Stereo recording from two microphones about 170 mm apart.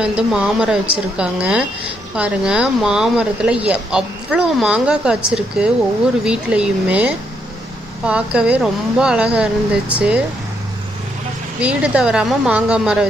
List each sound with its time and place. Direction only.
0.0 s speech: 5° right (ahead or behind)
11.6 s speech: 5° right (ahead or behind)